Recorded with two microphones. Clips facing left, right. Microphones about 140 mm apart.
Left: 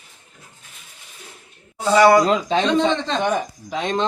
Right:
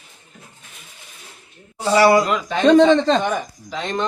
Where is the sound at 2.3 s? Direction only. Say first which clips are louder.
Left 3 dB; 20° left (ahead or behind).